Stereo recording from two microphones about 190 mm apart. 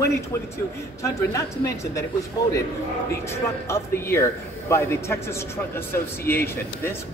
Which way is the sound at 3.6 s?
15° left (ahead or behind).